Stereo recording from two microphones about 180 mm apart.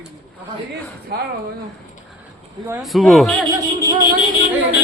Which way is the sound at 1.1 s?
60° right (ahead or behind).